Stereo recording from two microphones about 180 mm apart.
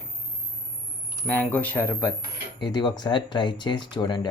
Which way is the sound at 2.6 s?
25° left (ahead or behind).